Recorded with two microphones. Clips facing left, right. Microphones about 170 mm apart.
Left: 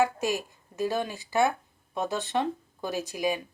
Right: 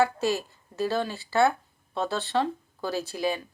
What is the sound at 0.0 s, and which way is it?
Speech, 15° left (ahead or behind).